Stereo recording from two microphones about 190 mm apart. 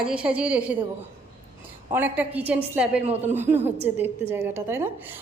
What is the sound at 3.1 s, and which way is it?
Speech, 35° right (ahead or behind).